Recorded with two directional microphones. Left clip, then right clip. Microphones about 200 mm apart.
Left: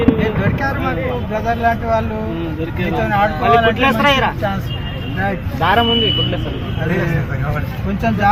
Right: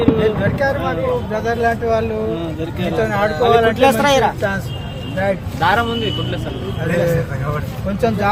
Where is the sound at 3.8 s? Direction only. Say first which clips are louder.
Right 1 dB; 60° right (ahead or behind).